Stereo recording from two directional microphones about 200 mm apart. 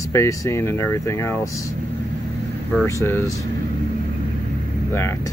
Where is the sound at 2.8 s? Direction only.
15° left (ahead or behind).